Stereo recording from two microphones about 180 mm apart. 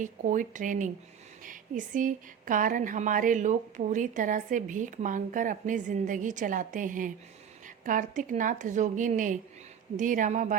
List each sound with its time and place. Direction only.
0.0 s speech: 45° right (ahead or behind)